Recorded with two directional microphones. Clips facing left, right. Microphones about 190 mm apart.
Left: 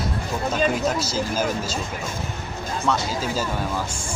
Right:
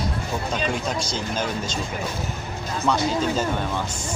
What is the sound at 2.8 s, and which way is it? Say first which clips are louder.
Speech: right 3 dB; 5° left (ahead or behind).